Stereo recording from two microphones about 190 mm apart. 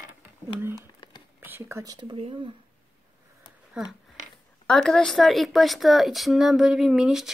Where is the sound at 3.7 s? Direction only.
5° right (ahead or behind).